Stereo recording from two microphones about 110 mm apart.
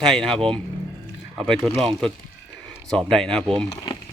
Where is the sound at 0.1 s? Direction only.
5° left (ahead or behind).